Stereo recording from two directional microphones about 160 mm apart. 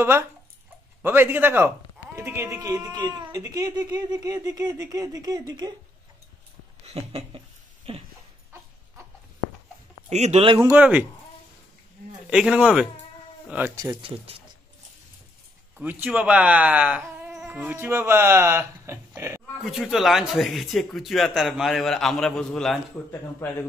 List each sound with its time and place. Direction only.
1.0 s speech: 15° right (ahead or behind)
6.9 s a sound: 40° right (ahead or behind)
10.0 s speech: 45° right (ahead or behind)
10.6 s speech: 15° right (ahead or behind)
12.3 s speech: 5° right (ahead or behind)
14.0 s speech: 35° right (ahead or behind)
15.8 s speech: 10° right (ahead or behind)
19.6 s speech: centre (ahead or behind)
23.4 s speech: 15° left (ahead or behind)